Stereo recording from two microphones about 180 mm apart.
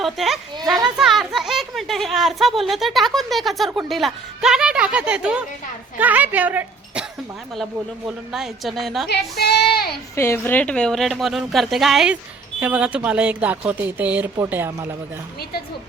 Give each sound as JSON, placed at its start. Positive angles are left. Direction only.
{"t": 0.0, "sound": "a sound", "side_deg": 0}
{"t": 0.9, "sound": "a woman's voice", "side_deg": 0}
{"t": 9.4, "sound": "child singing", "side_deg": 60}
{"t": 10.2, "sound": "a woman's voice", "side_deg": 15}